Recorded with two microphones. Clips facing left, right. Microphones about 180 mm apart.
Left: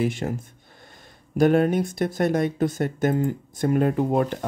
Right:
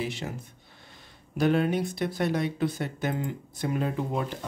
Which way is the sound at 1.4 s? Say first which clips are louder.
Left 6 dB; 50° left (ahead or behind).